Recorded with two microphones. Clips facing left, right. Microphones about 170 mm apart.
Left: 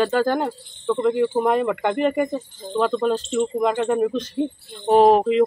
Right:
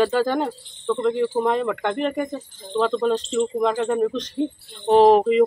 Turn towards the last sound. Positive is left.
turn(degrees=0)  # may be behind; listen again after turning